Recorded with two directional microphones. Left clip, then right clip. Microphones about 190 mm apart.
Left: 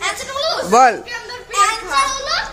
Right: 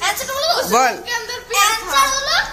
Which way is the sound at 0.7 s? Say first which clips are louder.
Left 7 dB; 20° left (ahead or behind).